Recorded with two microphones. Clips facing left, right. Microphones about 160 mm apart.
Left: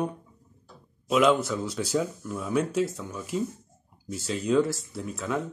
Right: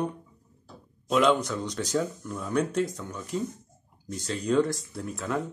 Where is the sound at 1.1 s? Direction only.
5° left (ahead or behind).